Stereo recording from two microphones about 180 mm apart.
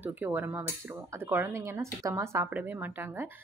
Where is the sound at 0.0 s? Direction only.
10° right (ahead or behind).